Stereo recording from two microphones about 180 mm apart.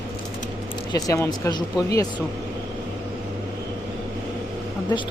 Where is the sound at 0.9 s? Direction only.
15° left (ahead or behind).